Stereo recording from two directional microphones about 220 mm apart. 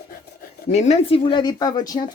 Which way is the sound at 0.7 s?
30° left (ahead or behind).